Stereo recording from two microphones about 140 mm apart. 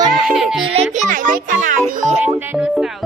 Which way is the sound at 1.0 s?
70° right (ahead or behind).